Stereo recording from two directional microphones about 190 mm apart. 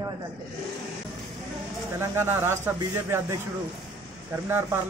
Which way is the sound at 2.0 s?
15° right (ahead or behind).